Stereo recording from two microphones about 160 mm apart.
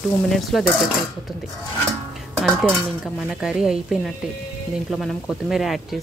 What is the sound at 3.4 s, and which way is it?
A woman's voice, 5° right (ahead or behind).